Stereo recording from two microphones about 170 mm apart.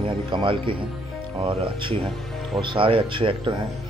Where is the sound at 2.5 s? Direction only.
30° right (ahead or behind).